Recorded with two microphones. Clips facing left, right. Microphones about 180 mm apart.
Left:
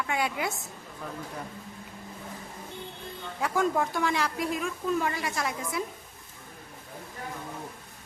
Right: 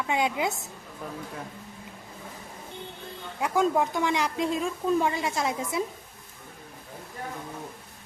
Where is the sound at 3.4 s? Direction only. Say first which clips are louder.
Right 3 dB; 15° right (ahead or behind).